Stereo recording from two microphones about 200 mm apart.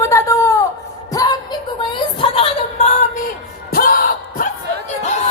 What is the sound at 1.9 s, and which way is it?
Music, 25° left (ahead or behind).